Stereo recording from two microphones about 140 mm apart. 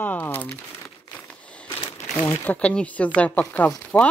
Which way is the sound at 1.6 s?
35° left (ahead or behind).